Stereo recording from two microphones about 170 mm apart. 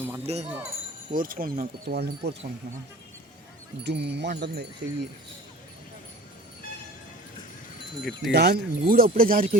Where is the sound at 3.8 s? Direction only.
90° right.